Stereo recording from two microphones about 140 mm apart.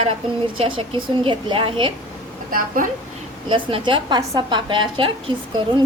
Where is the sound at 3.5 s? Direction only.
40° right (ahead or behind).